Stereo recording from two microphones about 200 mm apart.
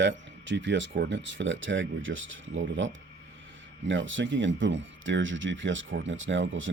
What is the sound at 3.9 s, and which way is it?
Speech, 70° right (ahead or behind).